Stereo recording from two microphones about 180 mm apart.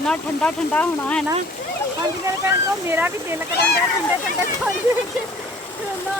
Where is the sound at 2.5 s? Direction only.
10° right (ahead or behind).